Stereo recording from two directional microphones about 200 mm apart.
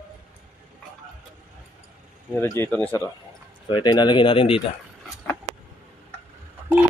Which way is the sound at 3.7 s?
20° left (ahead or behind).